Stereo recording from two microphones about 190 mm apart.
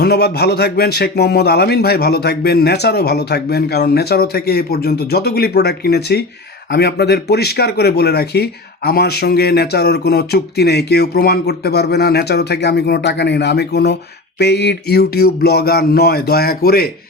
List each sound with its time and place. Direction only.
0.0 s speech: 60° left (ahead or behind)